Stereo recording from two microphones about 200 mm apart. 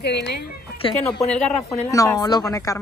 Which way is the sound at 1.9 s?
15° left (ahead or behind).